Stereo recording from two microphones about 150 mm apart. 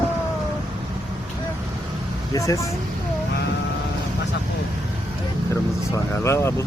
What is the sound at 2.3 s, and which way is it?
Speech, 20° left (ahead or behind).